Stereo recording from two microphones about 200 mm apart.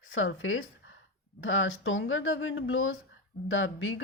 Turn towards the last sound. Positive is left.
turn(degrees=75)  # may be behind; listen again after turning